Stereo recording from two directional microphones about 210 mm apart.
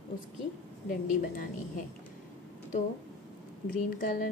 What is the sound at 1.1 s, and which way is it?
Speech, 40° left (ahead or behind).